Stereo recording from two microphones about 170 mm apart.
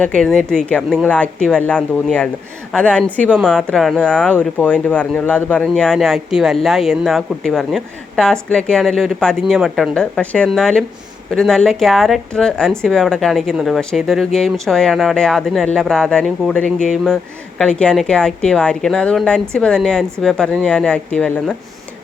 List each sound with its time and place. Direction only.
0.2 s speech: 5° left (ahead or behind)